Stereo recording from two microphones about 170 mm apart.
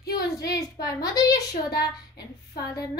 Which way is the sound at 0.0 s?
65° left (ahead or behind).